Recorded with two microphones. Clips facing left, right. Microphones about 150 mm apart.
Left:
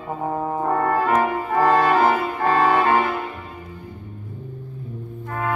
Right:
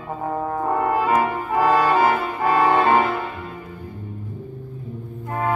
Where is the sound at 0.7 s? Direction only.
10° right (ahead or behind).